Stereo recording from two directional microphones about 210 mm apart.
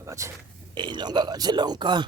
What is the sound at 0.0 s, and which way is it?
Speech, 15° right (ahead or behind).